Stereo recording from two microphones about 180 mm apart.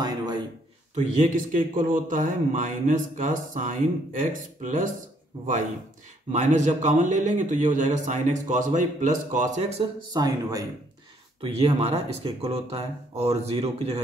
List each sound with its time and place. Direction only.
0.0 s a sound: 20° right (ahead or behind)
0.9 s a man's voice: 45° right (ahead or behind)
6.3 s a man's voice: 40° right (ahead or behind)
10.1 s speech: 20° right (ahead or behind)
11.4 s speech: 35° right (ahead or behind)